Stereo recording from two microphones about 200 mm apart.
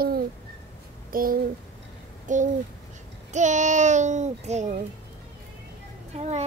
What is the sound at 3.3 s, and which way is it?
A child's voice, 35° right (ahead or behind).